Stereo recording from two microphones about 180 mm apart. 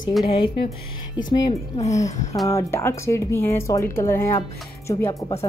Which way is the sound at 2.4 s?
15° left (ahead or behind).